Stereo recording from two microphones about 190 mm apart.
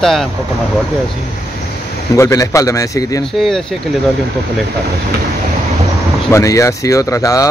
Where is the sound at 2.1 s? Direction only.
15° left (ahead or behind).